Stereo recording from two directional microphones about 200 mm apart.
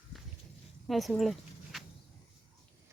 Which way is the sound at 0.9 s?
Centre (ahead or behind).